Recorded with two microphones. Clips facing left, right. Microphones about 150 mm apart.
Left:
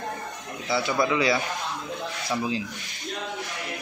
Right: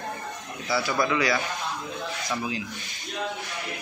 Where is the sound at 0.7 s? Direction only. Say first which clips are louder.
Left 1 dB; 25° left (ahead or behind).